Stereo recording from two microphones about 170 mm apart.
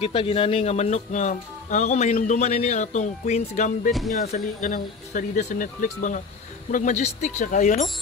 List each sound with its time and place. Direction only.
0.0 s speech: 35° left (ahead or behind)